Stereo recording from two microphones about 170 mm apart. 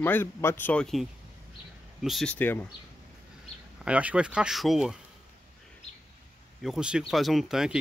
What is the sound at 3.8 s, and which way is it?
Speech, 5° right (ahead or behind).